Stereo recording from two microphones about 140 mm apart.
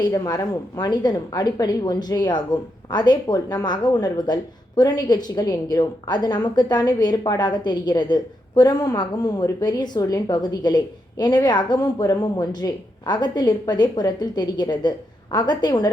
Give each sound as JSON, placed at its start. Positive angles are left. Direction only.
{"t": 0.0, "sound": "a woman's voice", "side_deg": 25}